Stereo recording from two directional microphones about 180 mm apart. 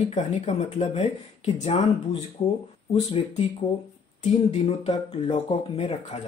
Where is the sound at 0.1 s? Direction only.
40° left (ahead or behind).